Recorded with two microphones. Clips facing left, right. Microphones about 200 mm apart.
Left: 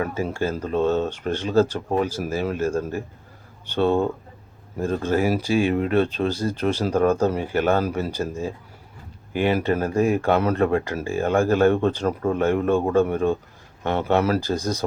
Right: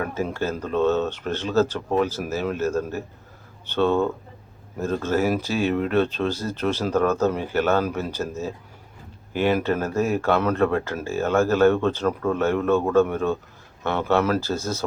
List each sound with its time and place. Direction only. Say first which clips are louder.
0.0 s speech: left 1 dB; 10° left (ahead or behind)